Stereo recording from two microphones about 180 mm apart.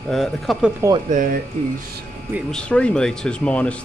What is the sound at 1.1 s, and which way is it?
Speech, 45° right (ahead or behind).